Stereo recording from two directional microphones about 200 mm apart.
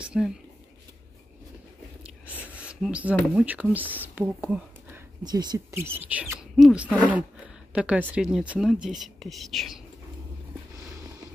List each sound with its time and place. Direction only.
0.0 s speech: 5° right (ahead or behind)
2.2 s speech: 5° right (ahead or behind)
5.2 s speech: 20° right (ahead or behind); by 9.8 s centre (ahead or behind)